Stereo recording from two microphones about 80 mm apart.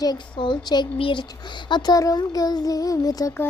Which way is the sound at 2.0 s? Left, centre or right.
Left.